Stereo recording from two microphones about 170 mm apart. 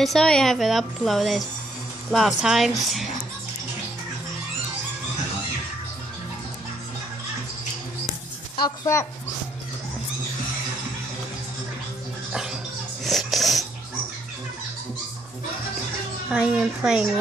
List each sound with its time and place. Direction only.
0.0 s a woman's voice: 5° left (ahead or behind)
8.6 s speech: 15° left (ahead or behind)
12.3 s a sound: 5° right (ahead or behind)
13.0 s wheeze: centre (ahead or behind)
16.3 s a woman's voice: 5° right (ahead or behind)